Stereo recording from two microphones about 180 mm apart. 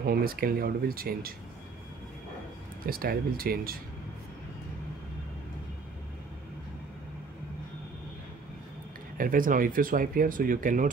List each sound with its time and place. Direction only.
0.0 s speech: 55° right (ahead or behind)
2.9 s speech: 55° right (ahead or behind)
9.2 s speech: 50° right (ahead or behind)